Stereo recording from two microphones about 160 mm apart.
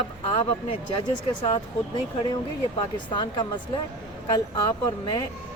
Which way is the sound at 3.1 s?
30° left (ahead or behind).